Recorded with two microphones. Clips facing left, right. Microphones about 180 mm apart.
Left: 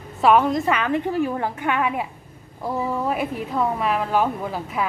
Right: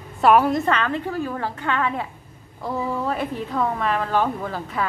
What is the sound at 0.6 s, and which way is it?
A woman's voice, 10° left (ahead or behind).